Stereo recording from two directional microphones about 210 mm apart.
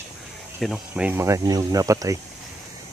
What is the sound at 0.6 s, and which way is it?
Speech, 5° right (ahead or behind).